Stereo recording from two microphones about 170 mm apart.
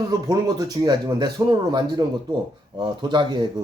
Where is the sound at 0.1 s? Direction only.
25° right (ahead or behind).